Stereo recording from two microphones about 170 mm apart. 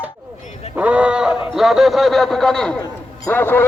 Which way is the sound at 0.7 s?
10° right (ahead or behind).